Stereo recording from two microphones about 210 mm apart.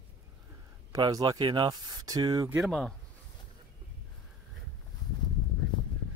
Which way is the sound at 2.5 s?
Centre (ahead or behind).